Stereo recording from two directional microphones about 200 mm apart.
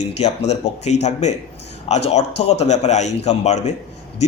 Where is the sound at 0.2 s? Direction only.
35° left (ahead or behind).